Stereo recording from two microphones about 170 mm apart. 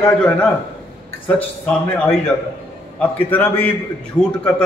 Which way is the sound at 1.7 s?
5° left (ahead or behind).